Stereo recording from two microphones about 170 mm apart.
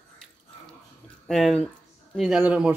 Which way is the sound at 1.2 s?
Centre (ahead or behind).